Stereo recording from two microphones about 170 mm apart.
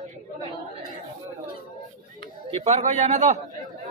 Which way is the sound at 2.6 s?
40° right (ahead or behind).